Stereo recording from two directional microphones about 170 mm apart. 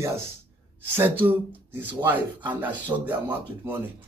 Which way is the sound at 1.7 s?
10° right (ahead or behind).